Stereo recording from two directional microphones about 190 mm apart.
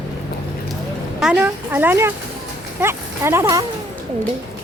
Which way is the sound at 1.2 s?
5° right (ahead or behind).